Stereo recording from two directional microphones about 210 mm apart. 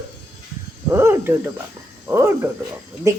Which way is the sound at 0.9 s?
10° right (ahead or behind).